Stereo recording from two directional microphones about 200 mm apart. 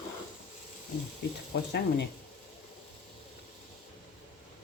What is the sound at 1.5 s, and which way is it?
Speech, 60° left (ahead or behind).